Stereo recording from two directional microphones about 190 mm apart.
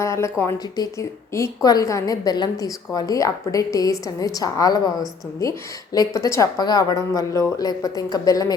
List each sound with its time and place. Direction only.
0.0 s a woman's voice: 15° left (ahead or behind)